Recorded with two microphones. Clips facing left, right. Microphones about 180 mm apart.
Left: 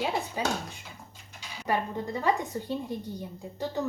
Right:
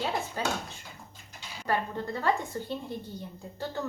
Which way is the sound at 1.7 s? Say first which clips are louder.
Left 1 dB; 15° left (ahead or behind).